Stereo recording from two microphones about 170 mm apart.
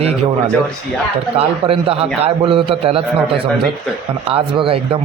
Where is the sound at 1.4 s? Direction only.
35° right (ahead or behind).